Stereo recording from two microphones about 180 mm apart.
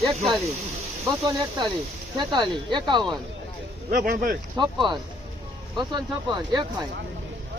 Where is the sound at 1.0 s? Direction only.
20° right (ahead or behind).